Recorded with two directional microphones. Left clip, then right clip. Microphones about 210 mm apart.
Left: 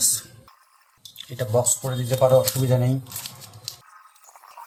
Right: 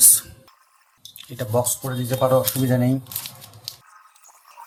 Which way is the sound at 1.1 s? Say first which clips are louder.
Even; 5° right (ahead or behind).